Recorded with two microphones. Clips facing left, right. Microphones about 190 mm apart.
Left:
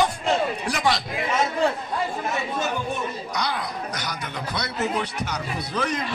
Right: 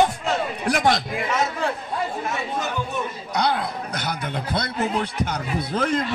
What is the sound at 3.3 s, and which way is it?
A man's voice, 55° right (ahead or behind).